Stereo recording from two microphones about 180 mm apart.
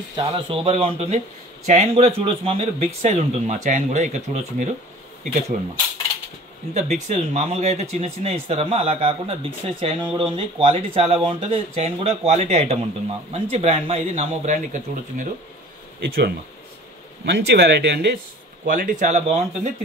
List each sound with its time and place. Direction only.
0.1 s speech: 25° right (ahead or behind); by 4.6 s 40° right (ahead or behind)
6.7 s speech: 40° right (ahead or behind)
16.0 s speech: 60° right (ahead or behind)
18.7 s speech: 50° right (ahead or behind)